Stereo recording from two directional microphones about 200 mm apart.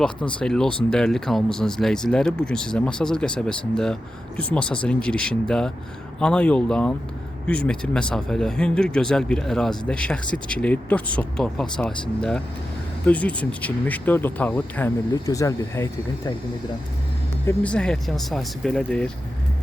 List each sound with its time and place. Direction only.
0.3 s speech: 5° left (ahead or behind)
17.4 s speech: 5° left (ahead or behind)